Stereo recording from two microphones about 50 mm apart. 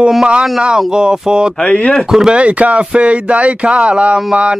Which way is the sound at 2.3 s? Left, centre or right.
Right.